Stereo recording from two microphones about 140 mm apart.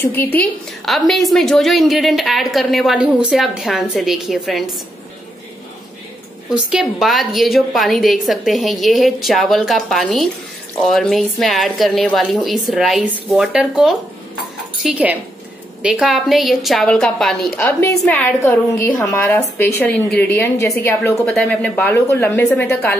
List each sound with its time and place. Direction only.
0.0 s a woman's voice: 15° left (ahead or behind)
0.8 s a woman's voice: centre (ahead or behind)
6.7 s a woman's voice: centre (ahead or behind)
17.6 s a woman's voice: 15° left (ahead or behind)
21.3 s a woman's voice: 5° left (ahead or behind)